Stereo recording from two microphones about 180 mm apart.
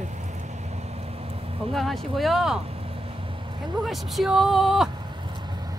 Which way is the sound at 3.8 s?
Centre (ahead or behind).